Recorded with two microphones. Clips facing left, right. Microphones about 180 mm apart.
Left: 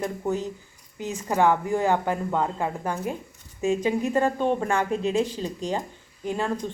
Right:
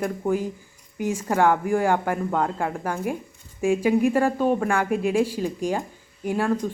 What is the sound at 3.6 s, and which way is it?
Speech, 10° right (ahead or behind).